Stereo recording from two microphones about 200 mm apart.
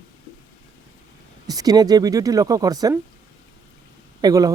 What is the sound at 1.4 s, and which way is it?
Speech, 20° right (ahead or behind).